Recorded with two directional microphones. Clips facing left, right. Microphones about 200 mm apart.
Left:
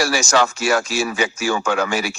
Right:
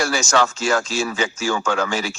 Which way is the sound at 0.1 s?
10° left (ahead or behind).